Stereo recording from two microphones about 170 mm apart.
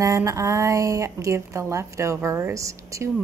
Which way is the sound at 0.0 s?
20° right (ahead or behind).